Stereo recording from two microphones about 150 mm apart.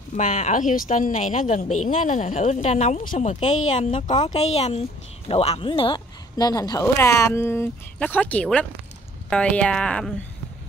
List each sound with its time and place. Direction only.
0.1 s a woman's voice: 55° left (ahead or behind); by 10.1 s 5° left (ahead or behind)